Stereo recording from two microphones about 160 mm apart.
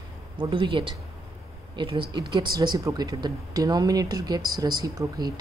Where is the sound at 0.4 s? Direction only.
30° right (ahead or behind).